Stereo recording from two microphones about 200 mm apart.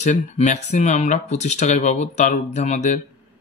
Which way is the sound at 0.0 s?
35° left (ahead or behind).